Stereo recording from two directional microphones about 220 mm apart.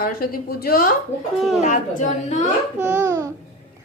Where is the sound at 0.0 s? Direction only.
40° left (ahead or behind).